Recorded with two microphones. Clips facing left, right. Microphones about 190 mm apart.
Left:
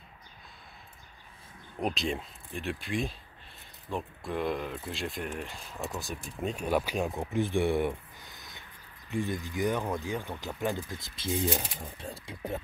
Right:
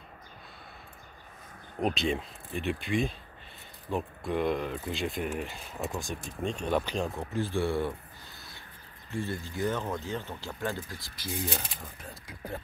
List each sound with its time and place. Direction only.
1.8 s speech: centre (ahead or behind); by 7.9 s 20° left (ahead or behind)
9.1 s speech: 15° left (ahead or behind)